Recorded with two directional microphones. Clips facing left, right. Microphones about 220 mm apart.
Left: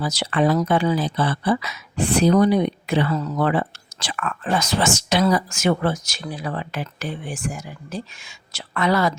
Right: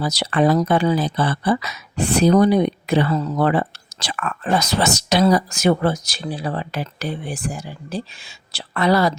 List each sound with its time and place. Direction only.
0.0 s speech: 40° right (ahead or behind)